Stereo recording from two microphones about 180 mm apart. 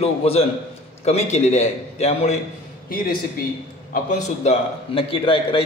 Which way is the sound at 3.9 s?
35° left (ahead or behind).